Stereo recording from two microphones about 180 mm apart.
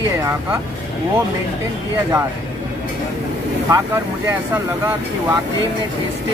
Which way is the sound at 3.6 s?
15° right (ahead or behind).